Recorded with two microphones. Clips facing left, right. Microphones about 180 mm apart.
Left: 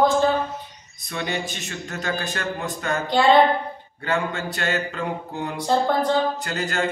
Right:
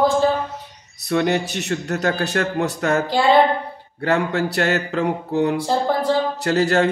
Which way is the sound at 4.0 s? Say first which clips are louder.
Right 6 dB; 70° right (ahead or behind).